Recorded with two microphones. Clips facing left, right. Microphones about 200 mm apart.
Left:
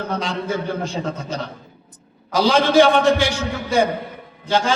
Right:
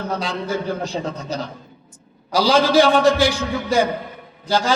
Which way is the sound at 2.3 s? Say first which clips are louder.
Even; 35° right (ahead or behind).